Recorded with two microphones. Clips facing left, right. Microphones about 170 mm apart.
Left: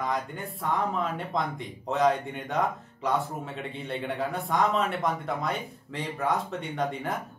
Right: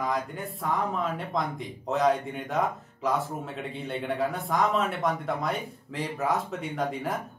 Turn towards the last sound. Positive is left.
turn(degrees=0)  # may be behind; listen again after turning